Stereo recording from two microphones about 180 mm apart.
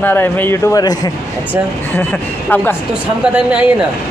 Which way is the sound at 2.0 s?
10° left (ahead or behind).